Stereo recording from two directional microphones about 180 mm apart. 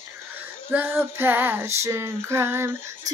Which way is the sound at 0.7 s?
10° right (ahead or behind).